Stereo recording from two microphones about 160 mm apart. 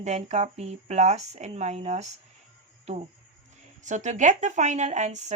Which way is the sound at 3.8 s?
50° right (ahead or behind).